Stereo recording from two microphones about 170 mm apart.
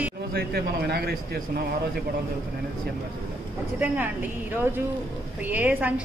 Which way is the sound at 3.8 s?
10° right (ahead or behind).